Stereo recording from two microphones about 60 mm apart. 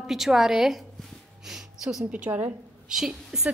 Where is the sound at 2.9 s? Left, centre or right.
Centre.